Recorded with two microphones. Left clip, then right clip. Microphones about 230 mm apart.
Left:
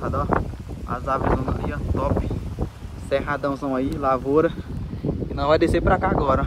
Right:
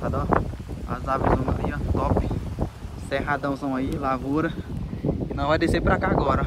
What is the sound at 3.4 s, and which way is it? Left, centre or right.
Speech, right.